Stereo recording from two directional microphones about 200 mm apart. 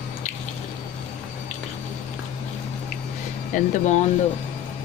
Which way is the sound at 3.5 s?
35° left (ahead or behind).